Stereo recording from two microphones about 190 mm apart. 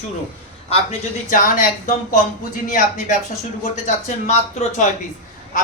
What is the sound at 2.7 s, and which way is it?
Speech, 45° left (ahead or behind).